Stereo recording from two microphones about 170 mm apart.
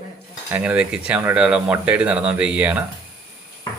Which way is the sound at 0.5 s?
10° right (ahead or behind).